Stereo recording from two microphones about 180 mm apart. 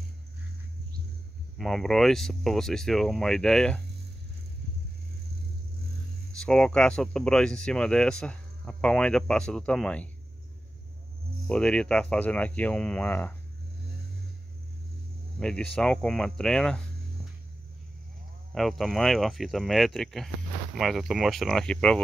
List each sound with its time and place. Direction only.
1.6 s speech: centre (ahead or behind)
6.4 s speech: 5° left (ahead or behind)
11.4 s speech: 5° left (ahead or behind)
15.3 s speech: 5° left (ahead or behind)
18.5 s speech: centre (ahead or behind)